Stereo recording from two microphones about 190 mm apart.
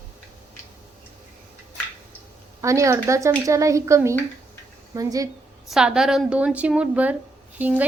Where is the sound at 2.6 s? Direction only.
15° right (ahead or behind).